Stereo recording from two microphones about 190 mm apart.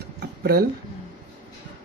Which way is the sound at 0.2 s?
55° right (ahead or behind).